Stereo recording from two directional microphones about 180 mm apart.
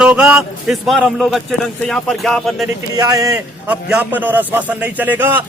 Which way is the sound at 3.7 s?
5° right (ahead or behind).